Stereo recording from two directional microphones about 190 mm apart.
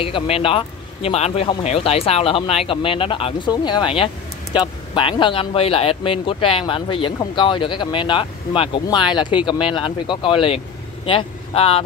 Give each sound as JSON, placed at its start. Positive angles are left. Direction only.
{"t": 0.0, "sound": "a man's voice", "side_deg": 30}